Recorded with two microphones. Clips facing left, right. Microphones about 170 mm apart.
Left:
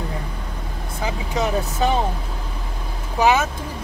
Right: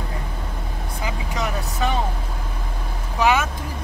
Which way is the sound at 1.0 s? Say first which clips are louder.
Left 4 dB; 30° left (ahead or behind).